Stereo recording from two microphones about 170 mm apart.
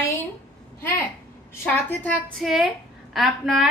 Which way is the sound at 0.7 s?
15° left (ahead or behind).